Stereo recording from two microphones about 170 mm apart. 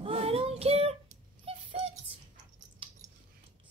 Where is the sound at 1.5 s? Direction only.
35° right (ahead or behind).